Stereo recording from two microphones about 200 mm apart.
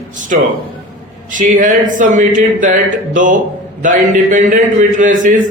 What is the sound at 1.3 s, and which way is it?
A man's voice, 40° right (ahead or behind).